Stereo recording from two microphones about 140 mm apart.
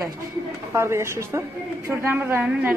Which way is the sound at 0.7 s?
20° right (ahead or behind).